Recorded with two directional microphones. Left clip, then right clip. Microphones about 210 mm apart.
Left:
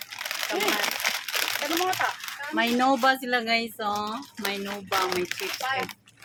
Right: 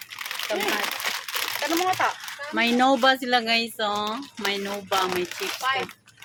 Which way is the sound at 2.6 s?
15° right (ahead or behind).